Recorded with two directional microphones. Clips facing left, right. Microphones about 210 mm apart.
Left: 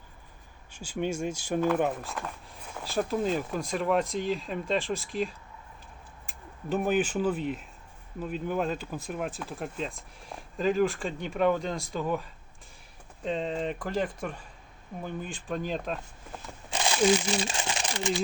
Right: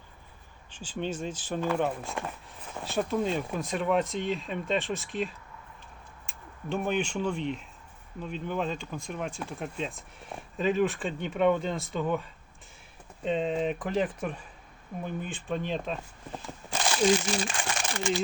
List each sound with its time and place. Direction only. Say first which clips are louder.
0.7 s speech: left 2 dB; 10° left (ahead or behind)
13.2 s speech: right 3 dB; 5° right (ahead or behind)
17.4 s speech: even; 25° left (ahead or behind)